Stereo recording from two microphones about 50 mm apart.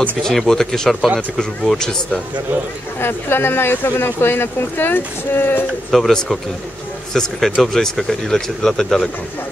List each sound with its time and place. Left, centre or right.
0.2 s speech: centre
3.0 s speech: left
5.9 s speech: centre
7.2 s speech: centre